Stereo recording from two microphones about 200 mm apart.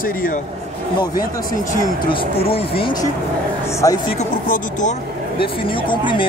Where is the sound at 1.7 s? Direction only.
25° left (ahead or behind).